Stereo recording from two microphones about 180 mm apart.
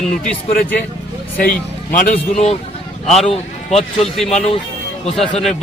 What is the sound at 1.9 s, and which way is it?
Speech, 50° left (ahead or behind).